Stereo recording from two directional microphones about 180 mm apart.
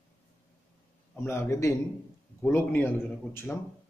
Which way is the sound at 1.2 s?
15° left (ahead or behind).